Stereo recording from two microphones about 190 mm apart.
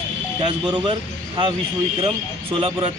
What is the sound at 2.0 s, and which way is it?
Speech, 30° right (ahead or behind).